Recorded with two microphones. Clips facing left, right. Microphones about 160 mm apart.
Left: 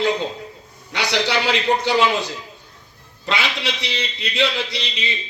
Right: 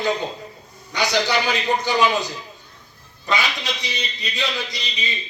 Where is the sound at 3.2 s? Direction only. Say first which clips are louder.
Even; 85° left.